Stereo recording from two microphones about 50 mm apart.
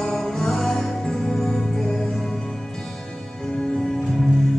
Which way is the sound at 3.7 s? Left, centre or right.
Centre.